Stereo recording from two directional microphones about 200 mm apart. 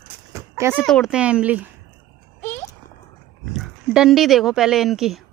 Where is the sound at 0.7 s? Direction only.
Centre (ahead or behind).